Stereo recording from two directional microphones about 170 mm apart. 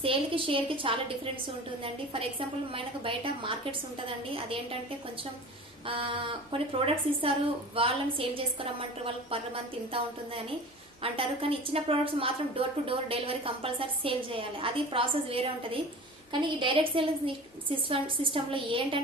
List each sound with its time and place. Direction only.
0.0 s a woman's voice: 30° right (ahead or behind)
2.7 s a woman's voice: 30° right (ahead or behind)
5.8 s a woman's voice: 30° right (ahead or behind)